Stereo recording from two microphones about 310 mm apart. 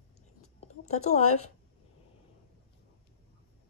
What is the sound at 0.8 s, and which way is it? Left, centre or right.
Speech, left.